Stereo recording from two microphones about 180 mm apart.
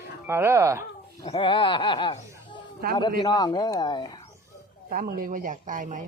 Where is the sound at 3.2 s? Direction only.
20° left (ahead or behind).